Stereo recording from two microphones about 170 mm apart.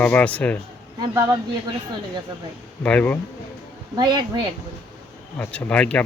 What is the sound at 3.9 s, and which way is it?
Speech, 25° right (ahead or behind).